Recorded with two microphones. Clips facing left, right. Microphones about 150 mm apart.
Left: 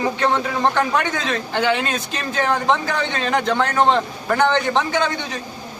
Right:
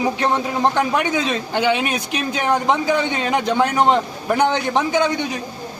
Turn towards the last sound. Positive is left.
turn(degrees=-15)  # may be behind; listen again after turning